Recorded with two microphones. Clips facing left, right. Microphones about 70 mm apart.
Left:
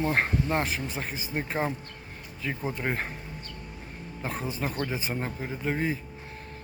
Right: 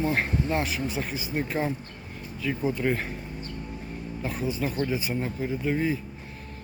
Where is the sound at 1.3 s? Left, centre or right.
Left.